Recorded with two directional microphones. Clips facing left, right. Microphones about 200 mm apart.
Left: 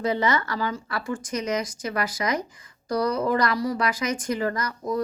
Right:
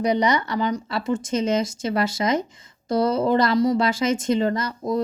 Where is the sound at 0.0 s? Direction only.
20° right (ahead or behind).